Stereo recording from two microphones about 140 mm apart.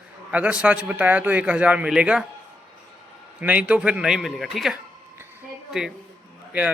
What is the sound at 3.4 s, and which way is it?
A man's voice, 10° right (ahead or behind).